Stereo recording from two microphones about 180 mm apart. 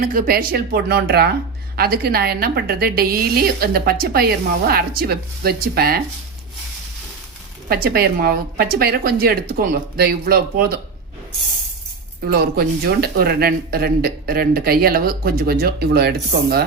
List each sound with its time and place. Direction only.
0.0 s speech: 55° right (ahead or behind)
7.7 s speech: 55° right (ahead or behind)
12.2 s speech: 60° right (ahead or behind)